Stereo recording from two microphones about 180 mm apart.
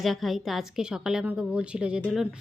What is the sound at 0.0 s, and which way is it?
A woman's voice, centre (ahead or behind).